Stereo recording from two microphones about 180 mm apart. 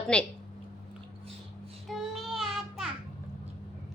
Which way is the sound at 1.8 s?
Centre (ahead or behind).